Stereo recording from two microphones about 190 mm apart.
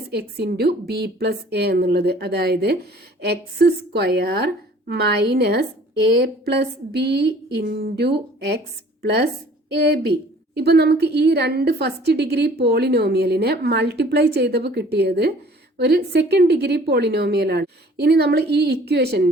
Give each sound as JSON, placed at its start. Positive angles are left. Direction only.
{"t": 0.1, "sound": "a woman's voice", "side_deg": -60}